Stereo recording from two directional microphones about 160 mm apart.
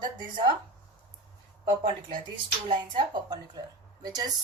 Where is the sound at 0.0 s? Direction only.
30° right (ahead or behind).